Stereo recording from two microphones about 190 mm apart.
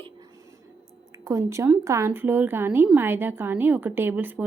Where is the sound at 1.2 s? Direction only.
15° right (ahead or behind).